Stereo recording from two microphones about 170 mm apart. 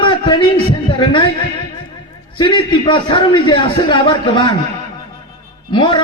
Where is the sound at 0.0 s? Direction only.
30° left (ahead or behind).